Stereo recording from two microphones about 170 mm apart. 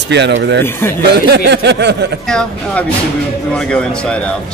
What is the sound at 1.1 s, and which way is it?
Speech, 70° right (ahead or behind).